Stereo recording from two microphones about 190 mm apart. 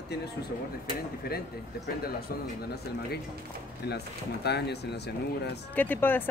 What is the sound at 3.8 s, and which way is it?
Speech, 60° left (ahead or behind).